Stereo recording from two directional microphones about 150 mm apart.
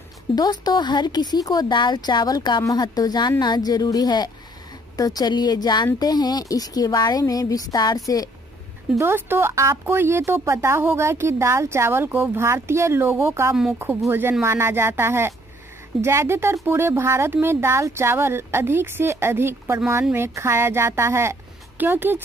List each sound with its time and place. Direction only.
0.4 s speech: 25° left (ahead or behind)
8.9 s speech: 15° right (ahead or behind)